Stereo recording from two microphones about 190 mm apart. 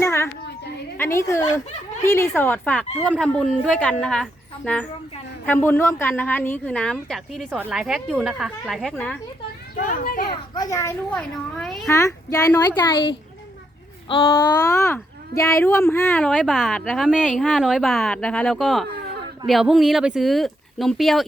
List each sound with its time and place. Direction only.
0.0 s a sound: 15° left (ahead or behind)
0.9 s a woman's voice: 15° left (ahead or behind)
9.7 s a child's voice: 45° left (ahead or behind)
10.5 s speech: 20° left (ahead or behind); by 11.9 s centre (ahead or behind)
11.9 s speech: 15° left (ahead or behind); by 21.2 s centre (ahead or behind)